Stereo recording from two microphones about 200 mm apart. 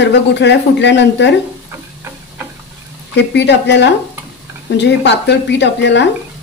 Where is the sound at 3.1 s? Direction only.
60° left (ahead or behind).